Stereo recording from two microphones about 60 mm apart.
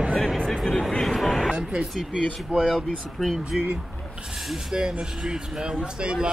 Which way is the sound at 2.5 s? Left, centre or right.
Centre.